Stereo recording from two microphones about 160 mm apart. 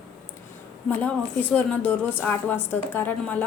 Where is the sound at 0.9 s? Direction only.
10° left (ahead or behind).